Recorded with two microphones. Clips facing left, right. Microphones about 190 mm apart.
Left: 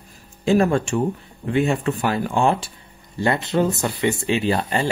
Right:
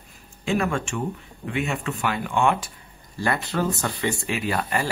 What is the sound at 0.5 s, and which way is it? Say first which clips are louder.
Speech: left 7 dB; 35° left (ahead or behind).